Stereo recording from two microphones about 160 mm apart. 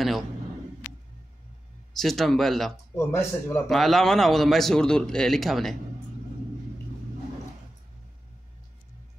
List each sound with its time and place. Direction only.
2.0 s a man's voice: centre (ahead or behind)
3.0 s speech: 15° left (ahead or behind)
3.6 s a man's voice: centre (ahead or behind)